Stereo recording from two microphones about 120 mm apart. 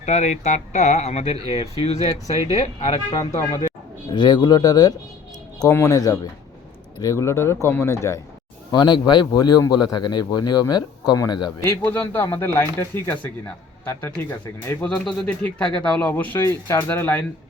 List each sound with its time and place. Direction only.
0.0 s speech: 70° left (ahead or behind)
4.1 s a man's voice: 40° left (ahead or behind)
8.7 s a man's voice: 35° left (ahead or behind)
11.7 s speech: 15° left (ahead or behind)